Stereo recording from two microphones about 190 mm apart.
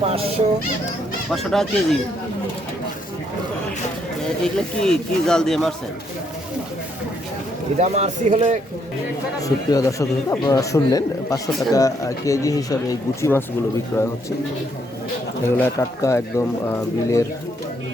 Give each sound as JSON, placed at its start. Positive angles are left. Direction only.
{"t": 0.0, "sound": "speech", "side_deg": -30}
{"t": 1.3, "sound": "speech", "side_deg": 0}
{"t": 4.2, "sound": "speech", "side_deg": 5}
{"t": 7.8, "sound": "a man's voice", "side_deg": -35}
{"t": 9.4, "sound": "speech", "side_deg": 20}
{"t": 15.4, "sound": "speech", "side_deg": 10}